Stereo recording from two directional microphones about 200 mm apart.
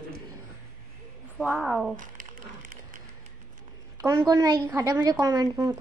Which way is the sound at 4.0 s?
15° right (ahead or behind).